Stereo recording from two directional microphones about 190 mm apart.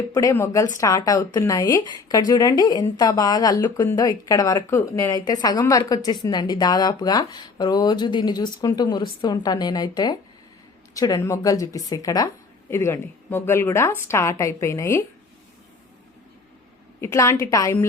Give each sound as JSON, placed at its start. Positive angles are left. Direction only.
{"t": 0.1, "sound": "a woman's voice", "side_deg": 15}
{"t": 17.0, "sound": "a woman's voice", "side_deg": 15}